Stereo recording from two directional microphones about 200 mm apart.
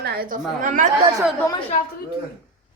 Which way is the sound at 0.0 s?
50° right (ahead or behind).